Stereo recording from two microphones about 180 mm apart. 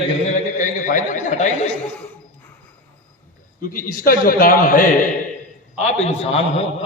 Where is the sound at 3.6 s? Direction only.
50° left (ahead or behind).